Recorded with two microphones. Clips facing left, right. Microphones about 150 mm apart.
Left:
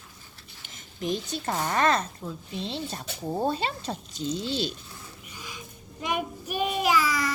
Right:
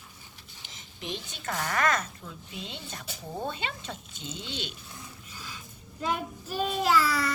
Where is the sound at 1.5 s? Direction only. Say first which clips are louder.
Left 3 dB; 25° left (ahead or behind).